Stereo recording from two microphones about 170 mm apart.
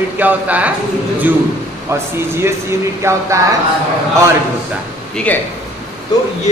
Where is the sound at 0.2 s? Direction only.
10° right (ahead or behind).